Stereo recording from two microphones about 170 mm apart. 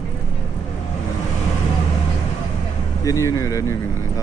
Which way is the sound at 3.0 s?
20° left (ahead or behind).